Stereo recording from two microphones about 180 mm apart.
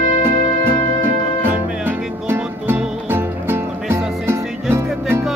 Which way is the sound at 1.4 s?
10° right (ahead or behind).